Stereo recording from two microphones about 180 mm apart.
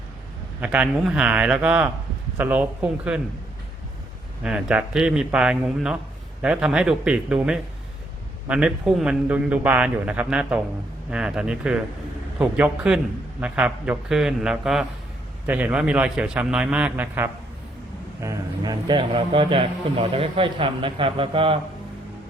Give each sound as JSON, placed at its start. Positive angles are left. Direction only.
{"t": 0.6, "sound": "a man's voice", "side_deg": -5}
{"t": 4.4, "sound": "a man's voice", "side_deg": -5}
{"t": 18.2, "sound": "a man's voice", "side_deg": -20}